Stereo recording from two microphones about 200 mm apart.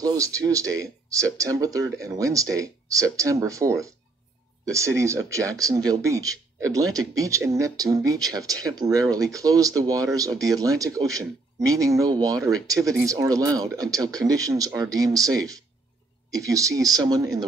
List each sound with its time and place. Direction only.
0.0 s speech: 15° right (ahead or behind)